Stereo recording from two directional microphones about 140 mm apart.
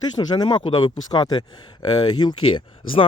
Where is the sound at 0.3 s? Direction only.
35° left (ahead or behind).